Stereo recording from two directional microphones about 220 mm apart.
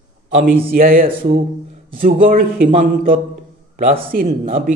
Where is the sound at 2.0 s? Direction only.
40° right (ahead or behind).